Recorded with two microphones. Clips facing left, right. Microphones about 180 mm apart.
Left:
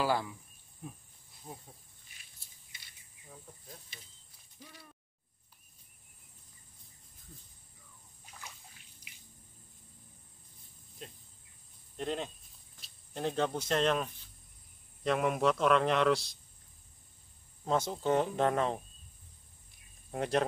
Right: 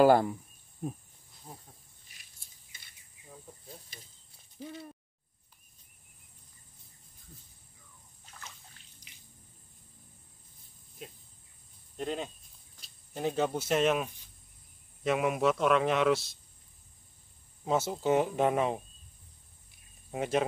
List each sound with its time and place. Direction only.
0.0 s speech: 50° right (ahead or behind)
3.9 s snake: 40° right (ahead or behind)
4.6 s hoot: 25° right (ahead or behind)
8.3 s splash: 10° left (ahead or behind)
8.8 s bathtub: 10° left (ahead or behind)
11.0 s cricket: 5° right (ahead or behind)
12.0 s speech: centre (ahead or behind)
17.6 s speech: 5° right (ahead or behind)
20.1 s speech: 5° right (ahead or behind)